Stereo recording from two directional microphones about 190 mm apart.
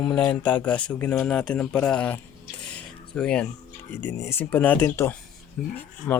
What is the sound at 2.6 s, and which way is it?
Cutlery, 5° left (ahead or behind).